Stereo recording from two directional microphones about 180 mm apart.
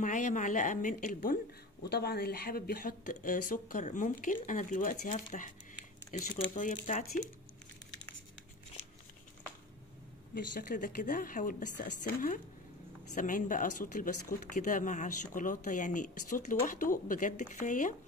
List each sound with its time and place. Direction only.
0.0 s speech: 45° left (ahead or behind)
1.9 s speech: 60° left (ahead or behind); by 7.2 s 45° left (ahead or behind)
10.3 s speech: 50° left (ahead or behind)
13.1 s speech: 45° left (ahead or behind)